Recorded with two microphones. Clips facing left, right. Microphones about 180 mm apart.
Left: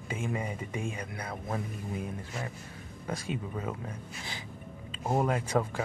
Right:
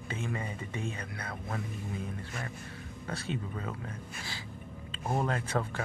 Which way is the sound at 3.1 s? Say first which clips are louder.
Left 2 dB; 15° left (ahead or behind).